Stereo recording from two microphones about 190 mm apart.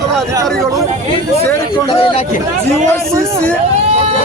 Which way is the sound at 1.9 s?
30° left (ahead or behind).